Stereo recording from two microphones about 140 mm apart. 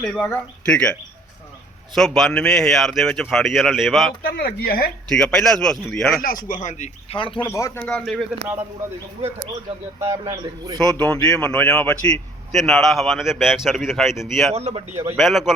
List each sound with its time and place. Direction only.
0.0 s speech: 5° left (ahead or behind)
2.0 s a man's voice: centre (ahead or behind)
4.2 s speech: 90° left
5.0 s a man's voice: 5° left (ahead or behind)
6.2 s speech: 75° left (ahead or behind); by 7.2 s 55° left (ahead or behind)
7.4 s speech: 20° left (ahead or behind)
7.8 s speech: 5° left (ahead or behind)
10.0 s a man's voice: 25° right (ahead or behind)
10.8 s a man's voice: 5° left (ahead or behind)
14.5 s a man's voice: 50° right (ahead or behind)
15.1 s a man's voice: centre (ahead or behind)